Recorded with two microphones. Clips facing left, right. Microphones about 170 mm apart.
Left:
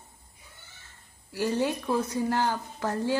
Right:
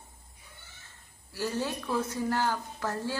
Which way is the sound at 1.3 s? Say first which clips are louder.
Left 5 dB; 15° left (ahead or behind).